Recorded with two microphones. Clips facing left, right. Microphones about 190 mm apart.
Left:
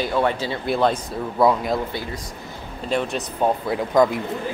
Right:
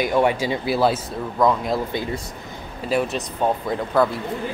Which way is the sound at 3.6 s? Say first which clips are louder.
Left 4 dB; 10° left (ahead or behind).